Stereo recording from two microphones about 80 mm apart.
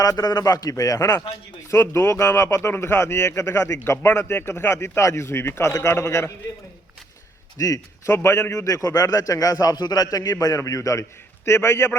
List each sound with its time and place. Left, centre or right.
0.0 s a man's voice: left
1.7 s speech: left
7.6 s a man's voice: left